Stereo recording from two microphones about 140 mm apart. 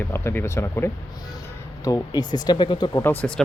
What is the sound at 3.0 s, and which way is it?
Speech, 10° left (ahead or behind).